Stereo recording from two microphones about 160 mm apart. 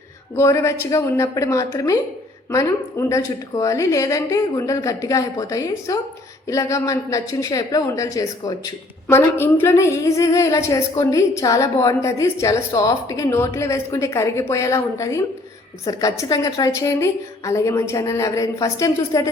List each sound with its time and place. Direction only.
0.3 s speech: 15° left (ahead or behind)